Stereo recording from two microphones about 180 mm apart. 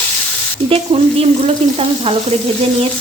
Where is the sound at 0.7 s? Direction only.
35° right (ahead or behind).